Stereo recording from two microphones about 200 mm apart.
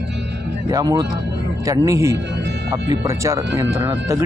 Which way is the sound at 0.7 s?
15° right (ahead or behind).